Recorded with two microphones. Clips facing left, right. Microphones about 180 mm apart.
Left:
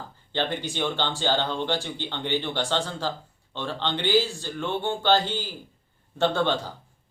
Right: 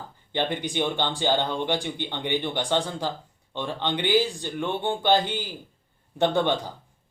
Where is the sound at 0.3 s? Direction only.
15° right (ahead or behind).